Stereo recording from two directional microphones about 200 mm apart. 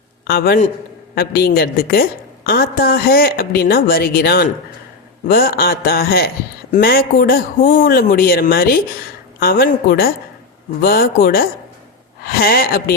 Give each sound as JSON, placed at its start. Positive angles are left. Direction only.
{"t": 0.3, "sound": "speech", "side_deg": 50}